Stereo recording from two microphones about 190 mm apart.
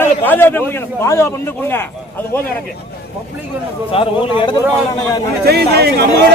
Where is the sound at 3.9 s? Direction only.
25° left (ahead or behind).